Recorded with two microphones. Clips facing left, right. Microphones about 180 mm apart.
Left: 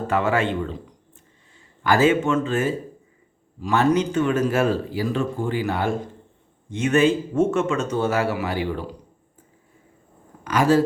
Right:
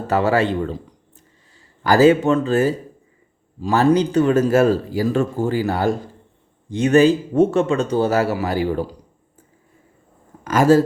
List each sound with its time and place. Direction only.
0.1 s a man's voice: 35° right (ahead or behind)
10.4 s a man's voice: 45° right (ahead or behind)